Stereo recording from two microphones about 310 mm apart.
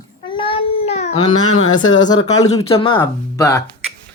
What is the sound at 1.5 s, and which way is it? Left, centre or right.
Speech, left.